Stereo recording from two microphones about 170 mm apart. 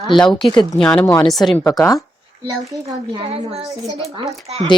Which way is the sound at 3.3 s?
35° right (ahead or behind).